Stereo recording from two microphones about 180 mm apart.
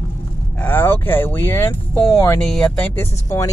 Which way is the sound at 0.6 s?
10° left (ahead or behind).